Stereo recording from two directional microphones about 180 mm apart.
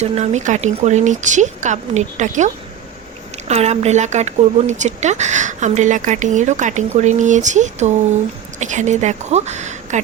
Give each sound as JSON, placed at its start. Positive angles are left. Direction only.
{"t": 0.0, "sound": "a woman's voice", "side_deg": -40}